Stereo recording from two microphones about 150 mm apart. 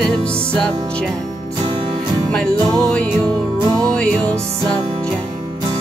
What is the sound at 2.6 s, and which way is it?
Music, 25° right (ahead or behind).